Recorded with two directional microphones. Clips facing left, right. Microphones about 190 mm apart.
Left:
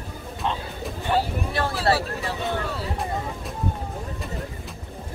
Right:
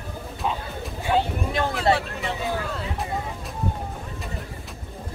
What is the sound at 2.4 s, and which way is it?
Speech, 5° right (ahead or behind).